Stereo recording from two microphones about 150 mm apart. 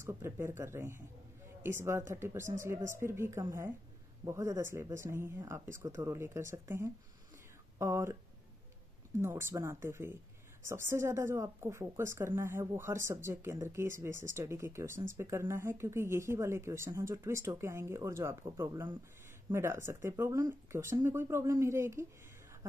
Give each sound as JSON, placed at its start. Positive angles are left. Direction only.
{"t": 0.0, "sound": "a woman's voice", "side_deg": -15}
{"t": 9.2, "sound": "a woman's voice", "side_deg": -15}